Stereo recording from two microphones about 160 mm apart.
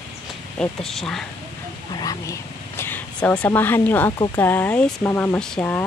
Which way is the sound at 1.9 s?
25° left (ahead or behind).